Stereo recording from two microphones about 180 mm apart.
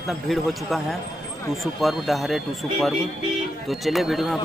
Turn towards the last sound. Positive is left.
turn(degrees=0)  # may be behind; listen again after turning